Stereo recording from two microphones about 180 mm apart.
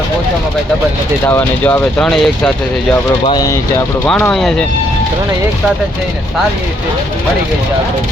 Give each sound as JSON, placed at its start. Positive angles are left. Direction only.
{"t": 1.3, "sound": "speech", "side_deg": 10}
{"t": 3.2, "sound": "speech", "side_deg": 20}
{"t": 4.0, "sound": "speech", "side_deg": 10}